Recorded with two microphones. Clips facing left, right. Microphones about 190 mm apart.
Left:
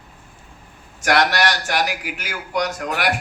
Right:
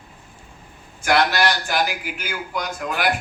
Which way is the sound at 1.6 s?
80° left.